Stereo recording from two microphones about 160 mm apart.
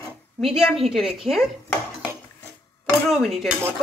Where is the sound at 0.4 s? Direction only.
Centre (ahead or behind).